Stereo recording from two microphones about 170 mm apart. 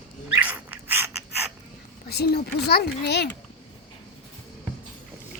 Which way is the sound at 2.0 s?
70° left (ahead or behind).